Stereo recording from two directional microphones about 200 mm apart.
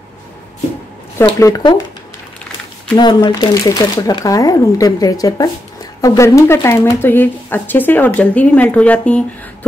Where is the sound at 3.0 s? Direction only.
20° left (ahead or behind).